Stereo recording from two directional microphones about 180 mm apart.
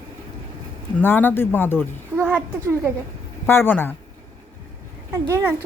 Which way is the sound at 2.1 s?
5° right (ahead or behind).